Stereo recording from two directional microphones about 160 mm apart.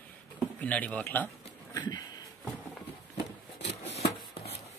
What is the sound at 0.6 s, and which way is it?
Speech, 10° left (ahead or behind).